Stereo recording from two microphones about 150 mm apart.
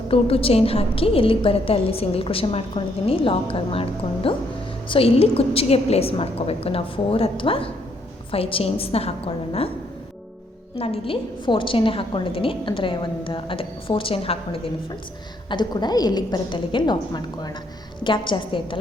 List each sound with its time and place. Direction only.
0.1 s a woman's voice: 40° left (ahead or behind)
10.8 s a woman's voice: 40° left (ahead or behind)